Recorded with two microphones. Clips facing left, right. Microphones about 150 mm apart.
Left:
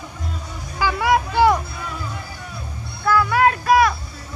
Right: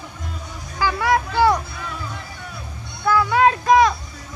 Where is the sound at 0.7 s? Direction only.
20° left (ahead or behind).